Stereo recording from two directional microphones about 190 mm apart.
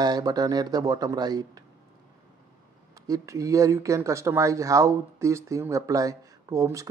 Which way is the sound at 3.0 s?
20° right (ahead or behind).